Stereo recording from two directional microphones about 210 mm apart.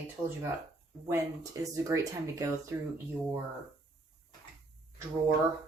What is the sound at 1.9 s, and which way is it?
Speech, 15° right (ahead or behind).